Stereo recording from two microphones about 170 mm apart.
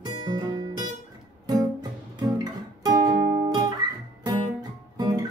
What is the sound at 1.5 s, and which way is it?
Guitar, 20° right (ahead or behind).